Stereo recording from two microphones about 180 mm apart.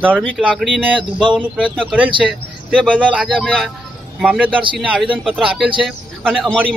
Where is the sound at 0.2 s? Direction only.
Centre (ahead or behind).